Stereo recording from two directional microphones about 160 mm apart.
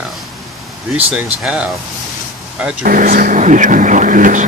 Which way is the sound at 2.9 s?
60° right (ahead or behind).